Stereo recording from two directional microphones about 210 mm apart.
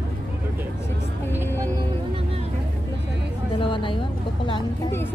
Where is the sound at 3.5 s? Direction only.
25° left (ahead or behind).